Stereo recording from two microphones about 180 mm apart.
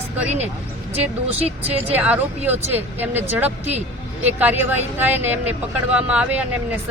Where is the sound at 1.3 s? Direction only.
35° right (ahead or behind).